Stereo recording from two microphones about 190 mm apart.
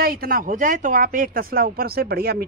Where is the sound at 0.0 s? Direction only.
50° right (ahead or behind).